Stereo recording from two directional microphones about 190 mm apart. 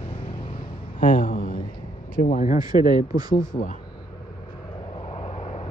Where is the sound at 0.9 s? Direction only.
45° left (ahead or behind).